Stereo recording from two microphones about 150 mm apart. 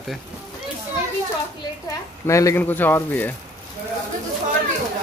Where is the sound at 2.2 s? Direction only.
20° left (ahead or behind).